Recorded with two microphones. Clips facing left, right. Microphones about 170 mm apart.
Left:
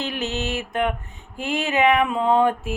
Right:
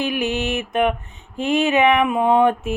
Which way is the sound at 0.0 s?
15° right (ahead or behind).